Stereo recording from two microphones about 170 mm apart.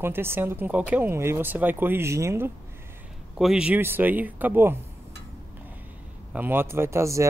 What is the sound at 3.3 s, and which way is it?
Speech, 5° right (ahead or behind).